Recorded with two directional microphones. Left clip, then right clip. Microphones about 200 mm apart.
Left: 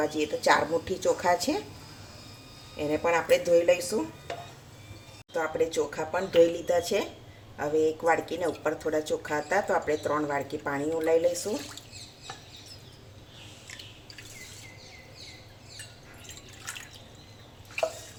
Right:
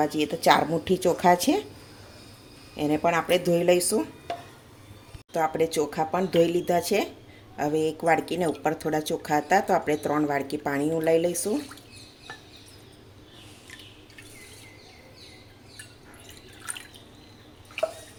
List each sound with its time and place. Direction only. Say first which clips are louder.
0.0 s a woman's voice: right 3 dB; 50° right (ahead or behind)
2.7 s speech: right 2 dB; 45° right (ahead or behind)
5.3 s speech: right 3 dB; 45° right (ahead or behind)